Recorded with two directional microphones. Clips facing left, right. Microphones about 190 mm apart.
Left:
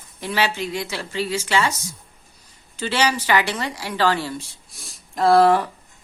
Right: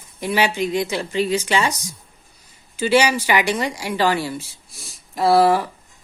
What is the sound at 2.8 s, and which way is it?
A woman's voice, 10° right (ahead or behind).